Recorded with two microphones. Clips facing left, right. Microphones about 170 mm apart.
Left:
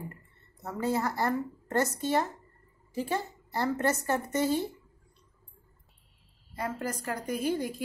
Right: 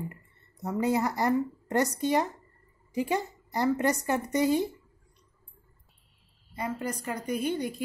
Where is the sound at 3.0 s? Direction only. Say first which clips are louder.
Right 3 dB; 15° right (ahead or behind).